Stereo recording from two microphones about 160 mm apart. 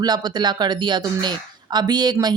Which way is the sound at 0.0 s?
25° right (ahead or behind).